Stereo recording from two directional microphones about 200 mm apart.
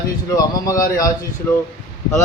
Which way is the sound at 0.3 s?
20° left (ahead or behind).